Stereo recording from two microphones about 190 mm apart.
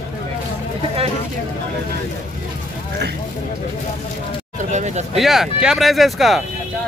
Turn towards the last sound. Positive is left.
turn(degrees=0)  # may be behind; listen again after turning